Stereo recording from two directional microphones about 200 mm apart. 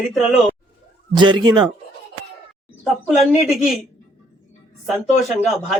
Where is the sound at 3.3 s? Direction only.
Centre (ahead or behind).